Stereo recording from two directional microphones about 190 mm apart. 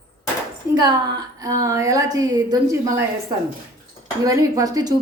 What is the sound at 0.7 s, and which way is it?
A woman's voice, 20° right (ahead or behind).